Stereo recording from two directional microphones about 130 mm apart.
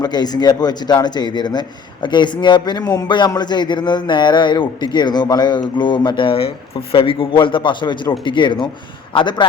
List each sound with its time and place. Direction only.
0.0 s speech: 30° left (ahead or behind)